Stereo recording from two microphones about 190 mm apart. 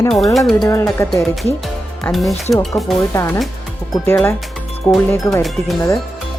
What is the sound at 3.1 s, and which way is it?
Speech, 15° left (ahead or behind).